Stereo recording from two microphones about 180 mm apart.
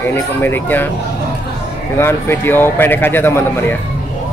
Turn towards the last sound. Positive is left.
turn(degrees=10)  # may be behind; listen again after turning